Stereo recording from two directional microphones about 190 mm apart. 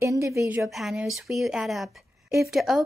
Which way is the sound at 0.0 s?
15° right (ahead or behind).